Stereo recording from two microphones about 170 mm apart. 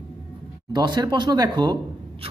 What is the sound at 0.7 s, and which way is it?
Speech, 25° right (ahead or behind).